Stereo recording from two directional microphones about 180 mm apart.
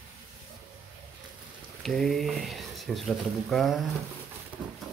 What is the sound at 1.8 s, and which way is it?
Speech, centre (ahead or behind).